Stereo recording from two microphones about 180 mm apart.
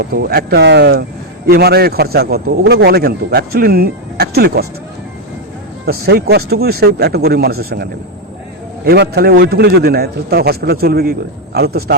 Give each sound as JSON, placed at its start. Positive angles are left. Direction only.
{"t": 0.0, "sound": "a man's voice", "side_deg": -60}
{"t": 5.8, "sound": "a man's voice", "side_deg": -60}